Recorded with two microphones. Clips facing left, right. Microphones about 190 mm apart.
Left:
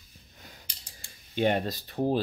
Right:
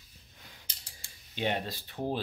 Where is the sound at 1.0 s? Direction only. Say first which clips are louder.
Left 7 dB; 50° left (ahead or behind).